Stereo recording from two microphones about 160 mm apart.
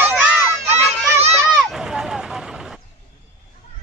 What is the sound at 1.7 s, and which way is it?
Vehicle, 5° right (ahead or behind).